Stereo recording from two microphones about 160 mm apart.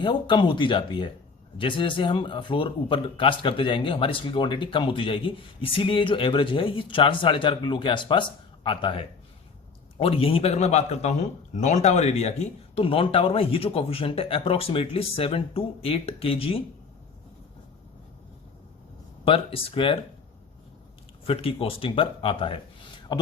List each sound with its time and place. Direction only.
0.0 s a man's voice: 30° left (ahead or behind)
19.2 s a man's voice: 35° left (ahead or behind)
21.2 s a man's voice: 35° left (ahead or behind)